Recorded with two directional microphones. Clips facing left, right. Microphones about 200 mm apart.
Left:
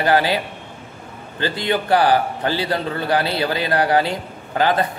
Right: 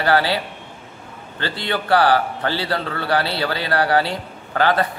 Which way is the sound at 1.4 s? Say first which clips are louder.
Left 4 dB; 15° left (ahead or behind).